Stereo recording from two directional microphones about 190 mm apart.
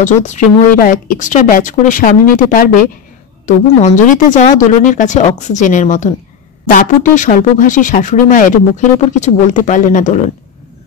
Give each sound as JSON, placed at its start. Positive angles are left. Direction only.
{"t": 0.0, "sound": "a woman's voice", "side_deg": 40}